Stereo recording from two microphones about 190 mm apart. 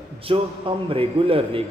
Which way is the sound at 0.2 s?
25° right (ahead or behind).